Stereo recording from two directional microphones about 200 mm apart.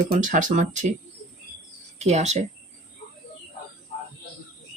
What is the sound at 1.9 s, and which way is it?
Speech, 35° right (ahead or behind).